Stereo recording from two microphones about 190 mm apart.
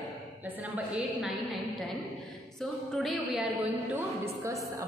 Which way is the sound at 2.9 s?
Centre (ahead or behind).